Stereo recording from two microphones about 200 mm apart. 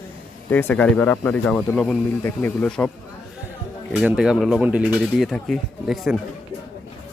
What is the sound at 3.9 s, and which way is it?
Speech, 5° right (ahead or behind).